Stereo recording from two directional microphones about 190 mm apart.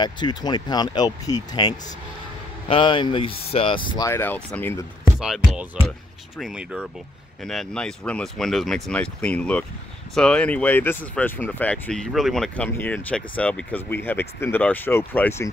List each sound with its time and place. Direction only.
0.0 s speech: 25° left (ahead or behind)
4.1 s speech: 10° left (ahead or behind)
5.2 s speech: centre (ahead or behind)